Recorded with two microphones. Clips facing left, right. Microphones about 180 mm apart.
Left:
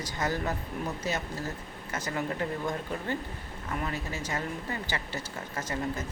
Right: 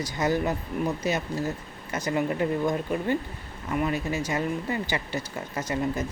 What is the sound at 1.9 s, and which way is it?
Speech, 15° right (ahead or behind).